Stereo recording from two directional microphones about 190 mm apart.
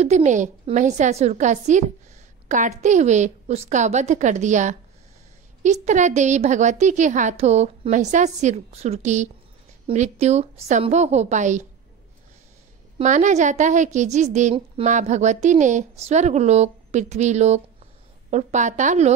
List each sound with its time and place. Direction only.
0.0 s a woman's voice: 35° right (ahead or behind)
13.0 s a woman's voice: 40° right (ahead or behind)